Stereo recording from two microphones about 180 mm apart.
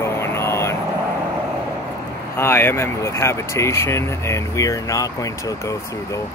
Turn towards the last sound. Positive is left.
turn(degrees=20)  # may be behind; listen again after turning